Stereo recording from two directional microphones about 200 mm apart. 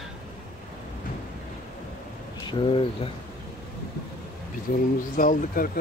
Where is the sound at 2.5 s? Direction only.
25° left (ahead or behind).